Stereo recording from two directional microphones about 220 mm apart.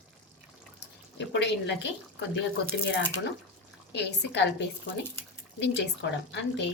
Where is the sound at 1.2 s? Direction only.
55° left (ahead or behind).